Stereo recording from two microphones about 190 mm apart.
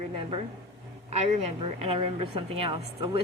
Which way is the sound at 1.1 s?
35° right (ahead or behind).